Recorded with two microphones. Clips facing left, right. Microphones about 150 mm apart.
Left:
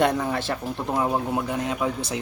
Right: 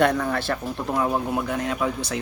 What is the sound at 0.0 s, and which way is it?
Speech, 20° left (ahead or behind).